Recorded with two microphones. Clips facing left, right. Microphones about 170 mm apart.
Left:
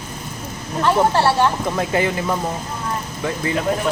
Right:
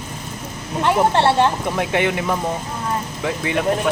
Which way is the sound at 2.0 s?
90° right.